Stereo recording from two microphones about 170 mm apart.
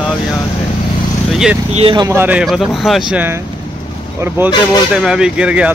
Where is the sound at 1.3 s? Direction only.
Centre (ahead or behind).